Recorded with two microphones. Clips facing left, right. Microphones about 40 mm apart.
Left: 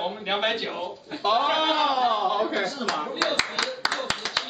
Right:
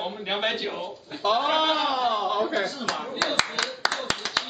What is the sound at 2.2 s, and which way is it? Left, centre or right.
Speech, centre.